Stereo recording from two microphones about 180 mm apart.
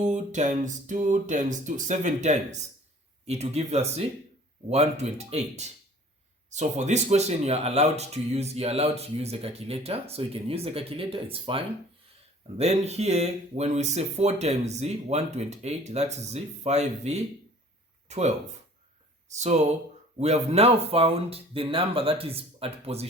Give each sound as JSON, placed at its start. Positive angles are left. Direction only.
{"t": 0.0, "sound": "speech", "side_deg": -40}